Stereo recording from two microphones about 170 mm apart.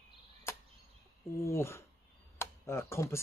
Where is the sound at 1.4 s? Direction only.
15° left (ahead or behind).